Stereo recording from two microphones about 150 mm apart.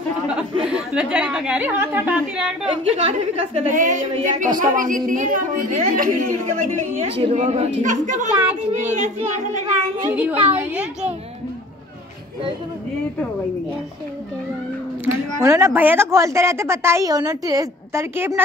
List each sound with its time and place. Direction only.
0.7 s a woman's voice: 5° right (ahead or behind)
3.0 s a woman's voice: 45° right (ahead or behind)
10.1 s a woman's voice: 10° right (ahead or behind)
15.4 s a woman's voice: 15° right (ahead or behind)